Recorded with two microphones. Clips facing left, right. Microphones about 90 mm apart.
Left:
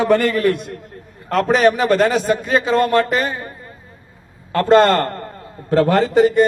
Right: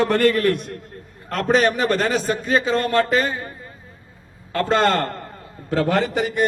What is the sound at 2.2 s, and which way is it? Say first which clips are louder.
A man's voice: left 3 dB; 25° left (ahead or behind).